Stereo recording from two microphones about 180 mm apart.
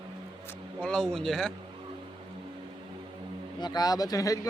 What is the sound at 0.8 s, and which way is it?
Speech, 5° left (ahead or behind).